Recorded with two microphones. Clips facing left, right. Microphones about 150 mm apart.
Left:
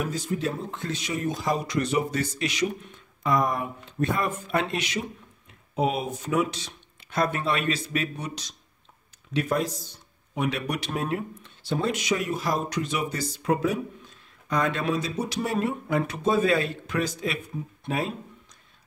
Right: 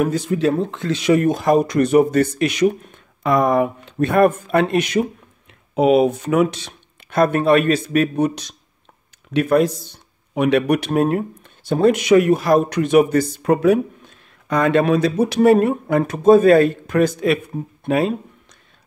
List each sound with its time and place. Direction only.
0.0 s speech: 65° right (ahead or behind)
5.8 s speech: 80° right; by 17.4 s 60° right (ahead or behind)
17.8 s a sound: 70° right (ahead or behind)